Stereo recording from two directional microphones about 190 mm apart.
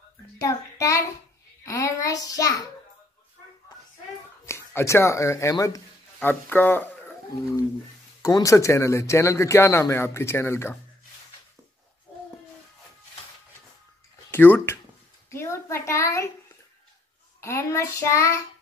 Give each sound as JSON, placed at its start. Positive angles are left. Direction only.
{"t": 0.4, "sound": "a child's voice", "side_deg": 15}
{"t": 4.5, "sound": "speech", "side_deg": 15}
{"t": 8.2, "sound": "speech", "side_deg": 15}
{"t": 14.3, "sound": "speech", "side_deg": 10}
{"t": 17.4, "sound": "speech", "side_deg": 15}